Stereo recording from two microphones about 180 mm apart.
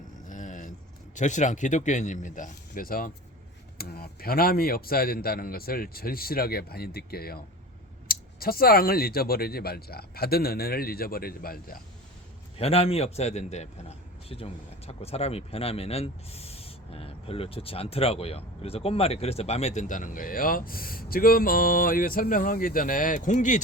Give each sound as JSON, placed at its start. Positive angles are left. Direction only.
{"t": 0.3, "sound": "a sound", "side_deg": 45}
{"t": 1.1, "sound": "speech", "side_deg": 40}
{"t": 12.5, "sound": "a man's voice", "side_deg": 35}